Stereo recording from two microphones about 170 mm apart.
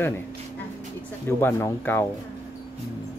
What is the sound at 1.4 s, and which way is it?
Speech, 15° left (ahead or behind).